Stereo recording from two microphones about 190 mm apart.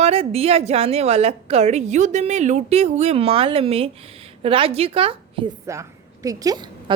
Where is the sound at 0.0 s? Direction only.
30° right (ahead or behind).